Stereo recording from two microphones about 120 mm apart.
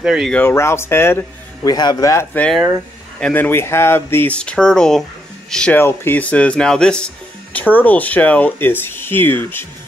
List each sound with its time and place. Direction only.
0.0 s speech: 5° right (ahead or behind)
0.3 s speech: 20° left (ahead or behind)
1.6 s a man's voice: 35° left (ahead or behind)
3.2 s speech: 10° left (ahead or behind)
5.8 s speech: 20° left (ahead or behind)